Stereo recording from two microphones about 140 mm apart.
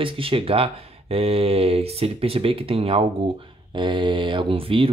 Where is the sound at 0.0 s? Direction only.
40° right (ahead or behind).